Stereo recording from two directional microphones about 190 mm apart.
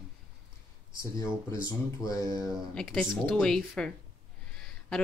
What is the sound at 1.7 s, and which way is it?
Speech, 20° left (ahead or behind).